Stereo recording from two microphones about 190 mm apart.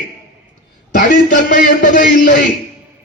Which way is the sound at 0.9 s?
45° left (ahead or behind).